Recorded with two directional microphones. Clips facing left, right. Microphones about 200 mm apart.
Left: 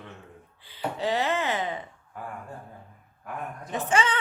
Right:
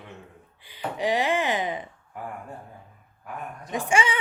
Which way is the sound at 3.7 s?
10° right (ahead or behind).